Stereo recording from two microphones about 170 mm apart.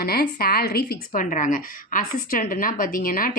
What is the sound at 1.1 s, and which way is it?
A woman's voice, 50° left (ahead or behind).